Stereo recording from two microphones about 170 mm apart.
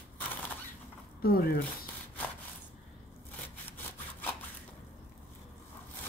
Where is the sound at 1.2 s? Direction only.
60° left (ahead or behind).